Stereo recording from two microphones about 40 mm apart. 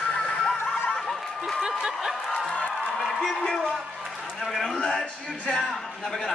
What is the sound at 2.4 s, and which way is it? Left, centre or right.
Music, left.